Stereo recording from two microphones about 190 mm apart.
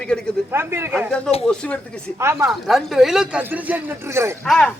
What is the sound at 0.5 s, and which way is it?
Speech, 15° right (ahead or behind).